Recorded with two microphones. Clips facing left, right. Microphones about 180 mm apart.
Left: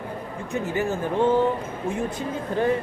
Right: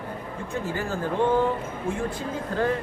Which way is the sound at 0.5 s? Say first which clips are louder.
Left 4 dB; 20° left (ahead or behind).